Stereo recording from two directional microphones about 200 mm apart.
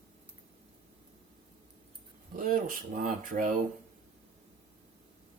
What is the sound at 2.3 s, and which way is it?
Speech, 45° right (ahead or behind).